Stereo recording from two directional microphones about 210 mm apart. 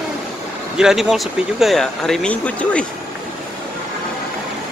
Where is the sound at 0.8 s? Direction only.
Centre (ahead or behind).